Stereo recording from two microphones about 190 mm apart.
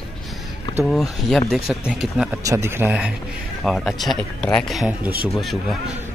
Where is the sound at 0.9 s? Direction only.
Centre (ahead or behind).